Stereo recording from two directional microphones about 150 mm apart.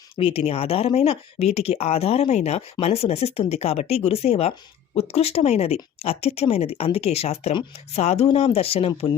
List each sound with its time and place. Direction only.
0.2 s speech: 40° left (ahead or behind)